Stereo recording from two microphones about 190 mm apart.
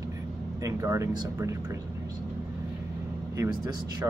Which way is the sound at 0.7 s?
15° right (ahead or behind).